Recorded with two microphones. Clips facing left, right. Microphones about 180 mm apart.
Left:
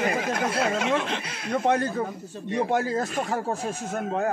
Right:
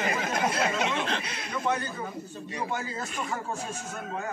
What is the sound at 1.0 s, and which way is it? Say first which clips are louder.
Speech: left 2 dB; 10° left (ahead or behind).